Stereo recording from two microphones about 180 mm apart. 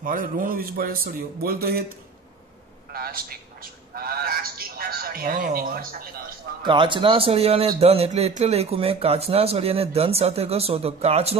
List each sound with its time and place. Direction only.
0.0 s a man's voice: 50° right (ahead or behind)
2.9 s a man's voice: 55° right (ahead or behind)
6.6 s a man's voice: 25° right (ahead or behind)